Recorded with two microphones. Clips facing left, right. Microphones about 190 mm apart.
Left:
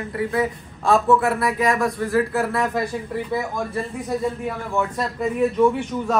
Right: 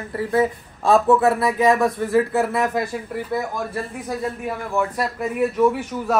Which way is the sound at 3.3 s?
Centre (ahead or behind).